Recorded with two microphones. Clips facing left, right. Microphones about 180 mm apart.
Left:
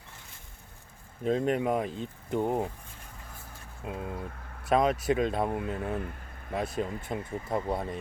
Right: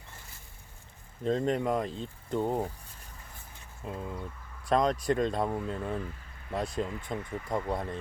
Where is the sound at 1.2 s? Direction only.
10° left (ahead or behind).